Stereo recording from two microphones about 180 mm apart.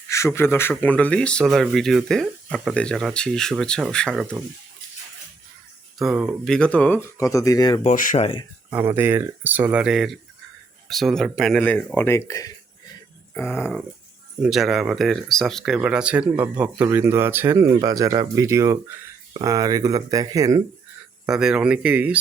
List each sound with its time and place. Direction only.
0.1 s speech: 15° left (ahead or behind)
6.0 s speech: 5° right (ahead or behind)
7.2 s speech: 20° left (ahead or behind)
7.9 s speech: 45° left (ahead or behind)
8.7 s speech: 10° right (ahead or behind); by 13.7 s 10° left (ahead or behind)
14.4 s speech: centre (ahead or behind); by 20.6 s 20° right (ahead or behind)
21.2 s speech: 5° right (ahead or behind)